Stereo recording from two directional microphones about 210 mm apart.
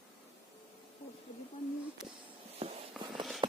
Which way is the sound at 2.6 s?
30° right (ahead or behind).